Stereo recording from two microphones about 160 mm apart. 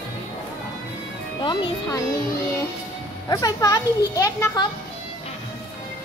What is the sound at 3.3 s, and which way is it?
A child's voice, 25° left (ahead or behind).